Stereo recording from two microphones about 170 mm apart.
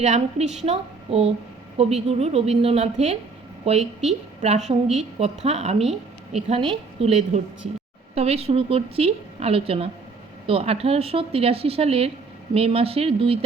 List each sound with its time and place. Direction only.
0.0 s a woman's voice: 40° right (ahead or behind)